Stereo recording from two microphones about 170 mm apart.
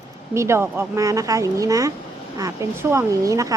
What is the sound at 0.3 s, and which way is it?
Speech, 15° right (ahead or behind).